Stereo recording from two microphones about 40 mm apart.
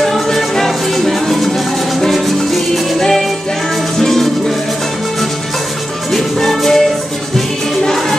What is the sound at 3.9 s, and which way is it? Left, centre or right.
Music, centre.